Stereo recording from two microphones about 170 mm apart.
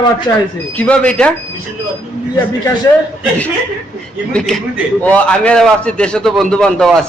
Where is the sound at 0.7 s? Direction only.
5° left (ahead or behind).